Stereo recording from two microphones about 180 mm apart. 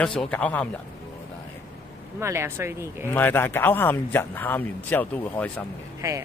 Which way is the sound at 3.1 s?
10° left (ahead or behind).